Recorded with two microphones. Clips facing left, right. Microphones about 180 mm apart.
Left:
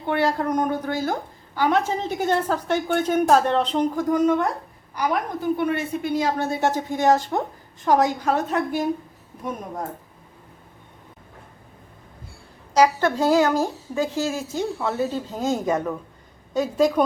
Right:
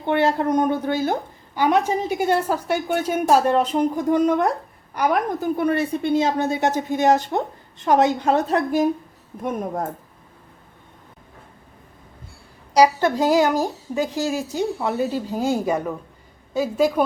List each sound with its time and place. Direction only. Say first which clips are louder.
0.0 s a woman's voice: right 3 dB; 20° right (ahead or behind)
4.9 s a woman's voice: right 4 dB; 55° right (ahead or behind)
5.5 s speech: right 3 dB; 35° right (ahead or behind)
12.7 s a woman's voice: right 2 dB; 15° right (ahead or behind)